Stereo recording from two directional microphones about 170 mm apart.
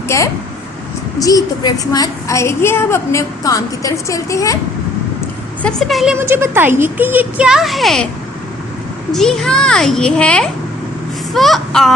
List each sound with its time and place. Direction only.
0.1 s a woman's voice: 15° left (ahead or behind)
5.6 s a child's voice: centre (ahead or behind)
6.1 s speech: 15° right (ahead or behind)
9.1 s a child's voice: centre (ahead or behind)